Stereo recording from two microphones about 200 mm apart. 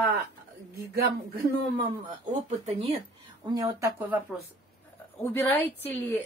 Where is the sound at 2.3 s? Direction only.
35° right (ahead or behind).